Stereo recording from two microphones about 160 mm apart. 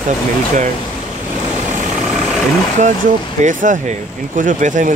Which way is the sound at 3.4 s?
55° right (ahead or behind).